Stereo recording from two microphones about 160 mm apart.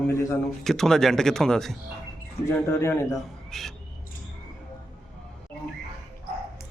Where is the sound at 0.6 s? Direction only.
5° left (ahead or behind).